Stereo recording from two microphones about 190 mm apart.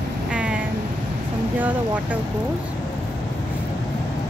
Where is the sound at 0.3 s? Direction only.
5° right (ahead or behind).